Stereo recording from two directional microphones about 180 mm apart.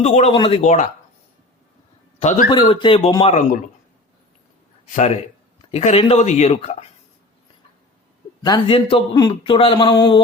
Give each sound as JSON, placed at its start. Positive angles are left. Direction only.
{"t": 0.0, "sound": "speech", "side_deg": 35}
{"t": 2.1, "sound": "a man's voice", "side_deg": 40}
{"t": 2.5, "sound": "speech", "side_deg": 25}
{"t": 4.9, "sound": "speech", "side_deg": 40}
{"t": 8.4, "sound": "speech", "side_deg": 20}